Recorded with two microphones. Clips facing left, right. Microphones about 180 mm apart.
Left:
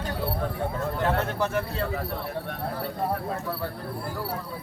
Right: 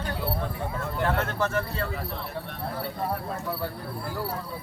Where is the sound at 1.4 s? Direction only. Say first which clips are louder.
Even; 15° left (ahead or behind).